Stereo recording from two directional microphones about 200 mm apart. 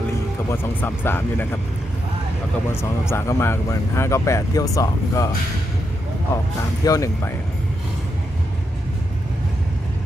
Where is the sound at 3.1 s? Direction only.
10° left (ahead or behind).